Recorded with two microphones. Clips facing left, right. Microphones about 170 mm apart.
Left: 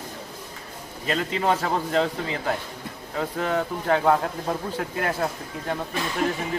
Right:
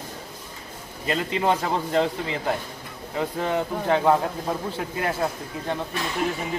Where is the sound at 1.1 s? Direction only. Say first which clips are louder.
Right 1 dB; 10° right (ahead or behind).